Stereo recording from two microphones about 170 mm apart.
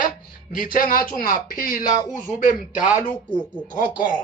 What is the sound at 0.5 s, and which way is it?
Speech, 55° left (ahead or behind).